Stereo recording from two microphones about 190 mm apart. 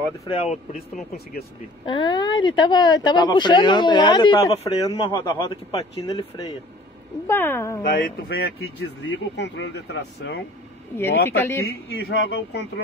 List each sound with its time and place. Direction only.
0.2 s speech: 30° left (ahead or behind)
1.9 s speech: 25° left (ahead or behind)
7.8 s speech: 50° left (ahead or behind)
11.0 s speech: 10° left (ahead or behind)
11.6 s speech: 65° left (ahead or behind)